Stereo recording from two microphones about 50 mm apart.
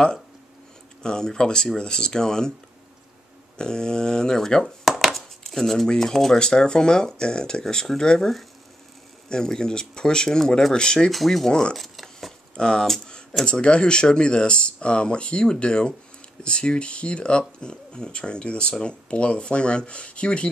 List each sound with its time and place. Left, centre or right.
1.0 s speech: centre
3.5 s speech: centre
11.1 s speech: centre
11.7 s a sound: centre
12.5 s speech: centre
12.8 s speech: centre
13.5 s speech: centre